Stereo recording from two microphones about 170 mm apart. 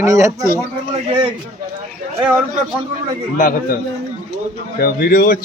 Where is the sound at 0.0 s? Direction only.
20° right (ahead or behind).